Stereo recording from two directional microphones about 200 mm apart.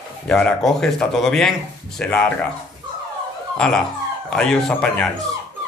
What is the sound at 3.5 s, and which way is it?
A man's voice, 5° left (ahead or behind).